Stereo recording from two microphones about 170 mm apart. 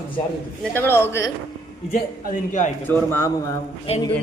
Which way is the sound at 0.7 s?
15° left (ahead or behind).